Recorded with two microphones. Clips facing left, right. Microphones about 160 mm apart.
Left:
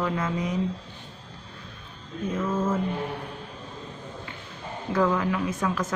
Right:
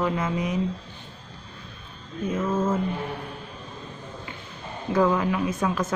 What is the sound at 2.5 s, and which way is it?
Speech, 25° right (ahead or behind).